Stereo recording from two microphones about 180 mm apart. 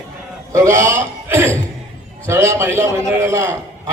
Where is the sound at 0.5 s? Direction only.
15° right (ahead or behind).